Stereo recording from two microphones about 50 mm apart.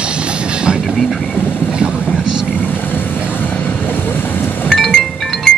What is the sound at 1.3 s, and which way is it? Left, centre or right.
Vehicle, centre.